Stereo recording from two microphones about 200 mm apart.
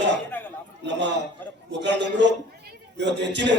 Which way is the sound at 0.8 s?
65° right (ahead or behind).